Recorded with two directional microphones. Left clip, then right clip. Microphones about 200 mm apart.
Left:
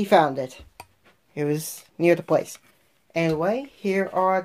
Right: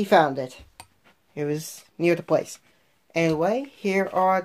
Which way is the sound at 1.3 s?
20° left (ahead or behind).